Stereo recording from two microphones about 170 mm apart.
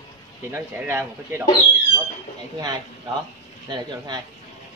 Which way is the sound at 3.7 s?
25° right (ahead or behind).